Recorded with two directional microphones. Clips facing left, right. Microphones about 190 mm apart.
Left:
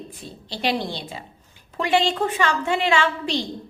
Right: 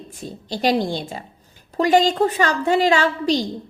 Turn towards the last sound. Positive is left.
turn(degrees=-40)  # may be behind; listen again after turning